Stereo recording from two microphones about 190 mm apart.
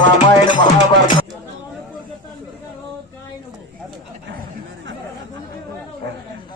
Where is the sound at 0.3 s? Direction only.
25° left (ahead or behind).